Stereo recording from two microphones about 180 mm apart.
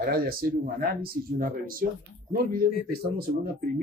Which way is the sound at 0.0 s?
55° right (ahead or behind).